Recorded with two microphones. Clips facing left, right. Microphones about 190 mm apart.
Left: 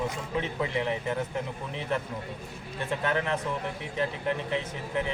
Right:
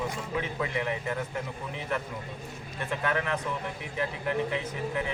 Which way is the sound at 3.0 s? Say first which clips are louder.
Left 1 dB; 30° left (ahead or behind).